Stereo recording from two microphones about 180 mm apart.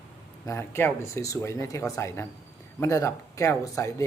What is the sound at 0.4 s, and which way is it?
Speech, 15° left (ahead or behind).